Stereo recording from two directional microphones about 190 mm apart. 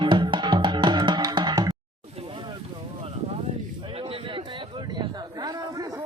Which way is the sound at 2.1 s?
30° right (ahead or behind).